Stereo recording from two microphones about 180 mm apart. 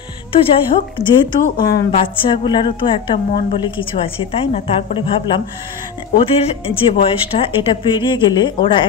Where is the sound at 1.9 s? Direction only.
30° left (ahead or behind).